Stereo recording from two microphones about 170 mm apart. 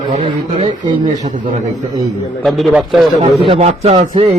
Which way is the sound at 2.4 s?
Centre (ahead or behind).